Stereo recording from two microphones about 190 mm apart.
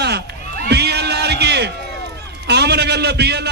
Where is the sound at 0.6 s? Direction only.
60° right (ahead or behind).